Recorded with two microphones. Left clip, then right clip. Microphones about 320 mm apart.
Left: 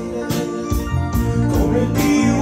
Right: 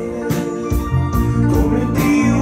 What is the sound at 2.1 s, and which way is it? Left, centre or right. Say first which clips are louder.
Music: right 2 dB; left.